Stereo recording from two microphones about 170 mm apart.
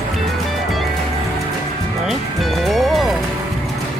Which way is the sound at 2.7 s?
Centre (ahead or behind).